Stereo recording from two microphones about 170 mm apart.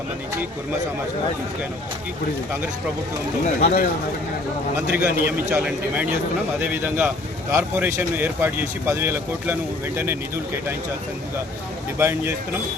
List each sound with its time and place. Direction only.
3.4 s speech: 60° left (ahead or behind)
4.9 s speech: 5° right (ahead or behind)
11.9 s speech: 10° right (ahead or behind)